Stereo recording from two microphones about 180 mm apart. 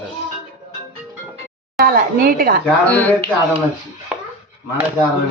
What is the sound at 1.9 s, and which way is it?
Speech, 55° right (ahead or behind).